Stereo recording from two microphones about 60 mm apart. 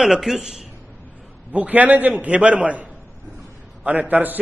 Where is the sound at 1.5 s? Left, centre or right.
Right.